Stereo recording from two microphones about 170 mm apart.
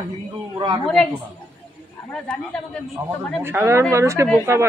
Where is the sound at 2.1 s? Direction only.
5° left (ahead or behind).